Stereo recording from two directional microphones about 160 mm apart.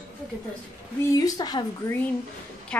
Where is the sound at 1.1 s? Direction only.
25° left (ahead or behind).